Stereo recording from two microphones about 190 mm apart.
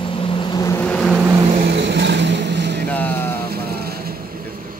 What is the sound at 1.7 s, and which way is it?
Vehicle, 65° right (ahead or behind).